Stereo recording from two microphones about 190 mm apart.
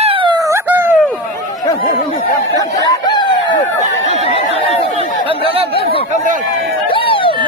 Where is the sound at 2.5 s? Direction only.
20° left (ahead or behind).